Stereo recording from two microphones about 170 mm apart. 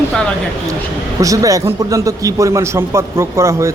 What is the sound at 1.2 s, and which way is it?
A man's voice, 20° right (ahead or behind).